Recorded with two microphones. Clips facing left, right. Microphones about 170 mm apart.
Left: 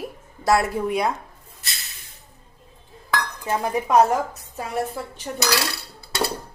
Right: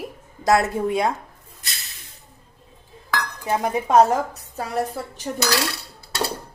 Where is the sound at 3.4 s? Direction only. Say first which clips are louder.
Right 2 dB; 20° right (ahead or behind).